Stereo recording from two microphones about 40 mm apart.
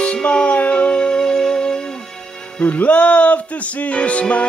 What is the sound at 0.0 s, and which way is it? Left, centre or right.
Music, left.